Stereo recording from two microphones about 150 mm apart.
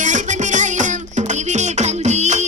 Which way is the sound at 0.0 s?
55° right (ahead or behind).